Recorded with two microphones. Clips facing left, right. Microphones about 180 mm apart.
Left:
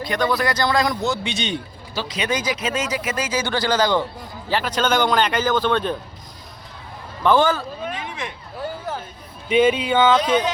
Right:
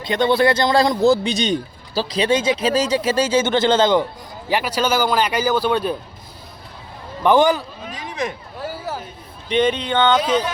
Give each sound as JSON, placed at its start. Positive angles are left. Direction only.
{"t": 0.0, "sound": "speech", "side_deg": -25}
{"t": 4.4, "sound": "a man's voice", "side_deg": -10}
{"t": 7.2, "sound": "a man's voice", "side_deg": -15}
{"t": 7.9, "sound": "a sound", "side_deg": -40}
{"t": 9.5, "sound": "speech", "side_deg": 5}